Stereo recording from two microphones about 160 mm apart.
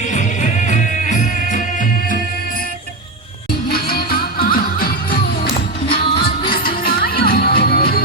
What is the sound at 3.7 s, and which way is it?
Music, 70° left (ahead or behind).